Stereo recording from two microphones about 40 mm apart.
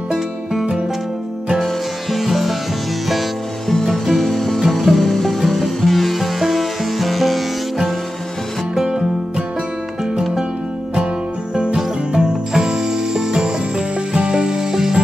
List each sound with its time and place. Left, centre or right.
1.6 s music: centre
11.5 s music: centre